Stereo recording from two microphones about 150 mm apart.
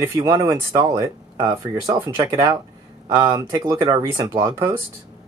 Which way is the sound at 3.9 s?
20° right (ahead or behind).